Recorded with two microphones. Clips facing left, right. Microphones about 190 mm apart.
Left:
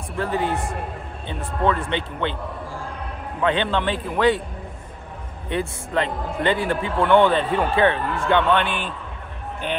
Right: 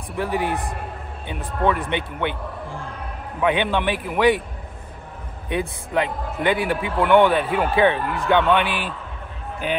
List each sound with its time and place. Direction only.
0.2 s speech: 15° right (ahead or behind)
3.3 s speech: 15° right (ahead or behind)
5.5 s speech: 15° right (ahead or behind)